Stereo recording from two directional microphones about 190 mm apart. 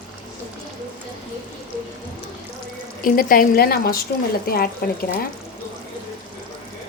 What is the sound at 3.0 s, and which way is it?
A woman's voice, 45° left (ahead or behind).